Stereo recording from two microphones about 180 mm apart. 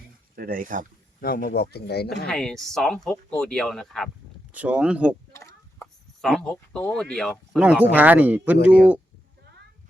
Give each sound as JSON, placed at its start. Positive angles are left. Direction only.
{"t": 0.3, "sound": "speech", "side_deg": -55}
{"t": 1.2, "sound": "speech", "side_deg": 55}
{"t": 2.2, "sound": "speech", "side_deg": 5}
{"t": 5.3, "sound": "a sound", "side_deg": 15}
{"t": 6.2, "sound": "speech", "side_deg": 0}
{"t": 7.6, "sound": "speech", "side_deg": -5}
{"t": 8.5, "sound": "speech", "side_deg": 65}